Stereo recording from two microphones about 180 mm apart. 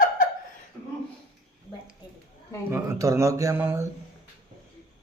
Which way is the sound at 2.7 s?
15° right (ahead or behind).